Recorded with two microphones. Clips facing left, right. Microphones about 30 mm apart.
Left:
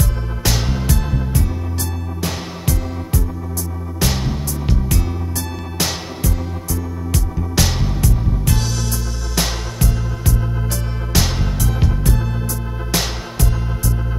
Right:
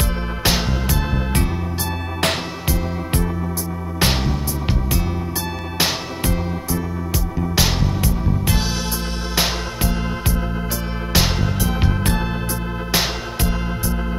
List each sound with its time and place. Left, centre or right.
0.0 s music: right
1.1 s music: right
4.0 s music: right
4.6 s music: centre
5.8 s music: right
7.1 s music: centre
12.0 s music: right
12.9 s music: right